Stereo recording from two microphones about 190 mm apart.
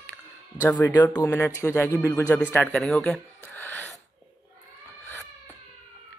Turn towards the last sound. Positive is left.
turn(degrees=10)  # may be behind; listen again after turning